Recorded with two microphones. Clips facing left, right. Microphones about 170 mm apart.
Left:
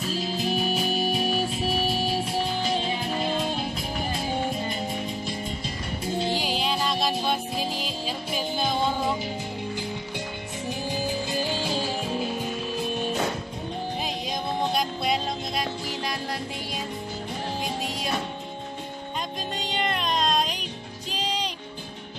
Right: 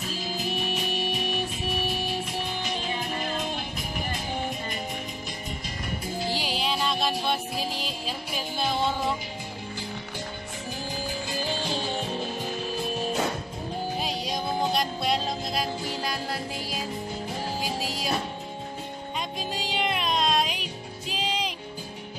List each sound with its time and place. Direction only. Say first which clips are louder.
0.5 s music: left 5 dB; 35° left (ahead or behind)
6.3 s music: left 2 dB; centre (ahead or behind)
11.6 s music: left 2 dB; 5° left (ahead or behind)
19.5 s music: even; 5° right (ahead or behind)